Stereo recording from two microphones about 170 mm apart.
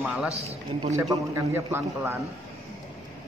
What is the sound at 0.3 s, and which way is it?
Speech, 40° right (ahead or behind).